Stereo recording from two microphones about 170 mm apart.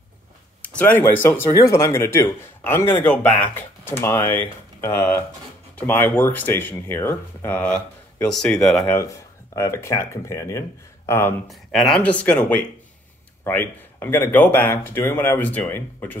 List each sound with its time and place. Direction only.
0.6 s speech: 10° left (ahead or behind)
8.9 s speech: 20° left (ahead or behind)
11.4 s speech: centre (ahead or behind)